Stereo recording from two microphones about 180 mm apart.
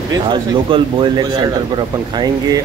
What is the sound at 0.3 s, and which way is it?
Speech, 30° right (ahead or behind).